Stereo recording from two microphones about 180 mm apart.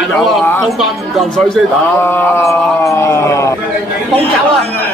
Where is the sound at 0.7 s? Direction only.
Centre (ahead or behind); by 3.5 s 15° left (ahead or behind).